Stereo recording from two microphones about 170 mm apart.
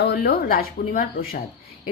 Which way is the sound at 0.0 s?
70° left (ahead or behind).